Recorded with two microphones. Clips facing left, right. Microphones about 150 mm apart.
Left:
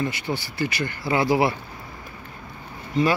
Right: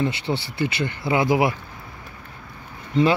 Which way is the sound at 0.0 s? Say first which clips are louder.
Right 3 dB; 25° right (ahead or behind).